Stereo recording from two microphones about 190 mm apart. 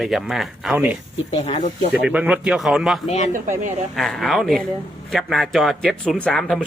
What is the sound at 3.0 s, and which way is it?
Speech, 35° left (ahead or behind).